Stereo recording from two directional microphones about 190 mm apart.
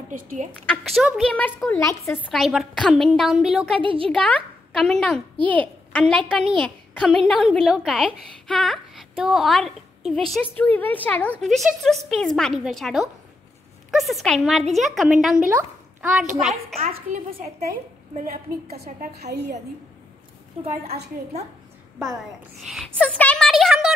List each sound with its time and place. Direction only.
0.1 s a woman's voice: 45° right (ahead or behind)
0.7 s a woman's voice: centre (ahead or behind)
2.2 s a woman's voice: centre (ahead or behind)
3.8 s a child's voice: 30° right (ahead or behind)
4.1 s a woman's voice: 5° left (ahead or behind)
5.5 s a woman's voice: 5° left (ahead or behind)
16.8 s a woman's voice: 30° right (ahead or behind)
18.1 s a woman's voice: 50° right (ahead or behind)
22.7 s a woman's voice: centre (ahead or behind)